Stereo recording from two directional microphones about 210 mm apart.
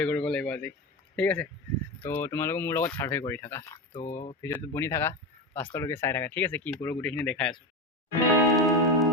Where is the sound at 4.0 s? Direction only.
35° left (ahead or behind).